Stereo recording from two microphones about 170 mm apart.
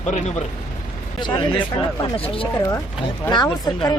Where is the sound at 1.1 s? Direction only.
25° left (ahead or behind).